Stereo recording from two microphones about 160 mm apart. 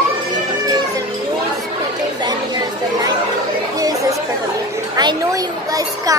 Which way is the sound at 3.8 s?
20° right (ahead or behind).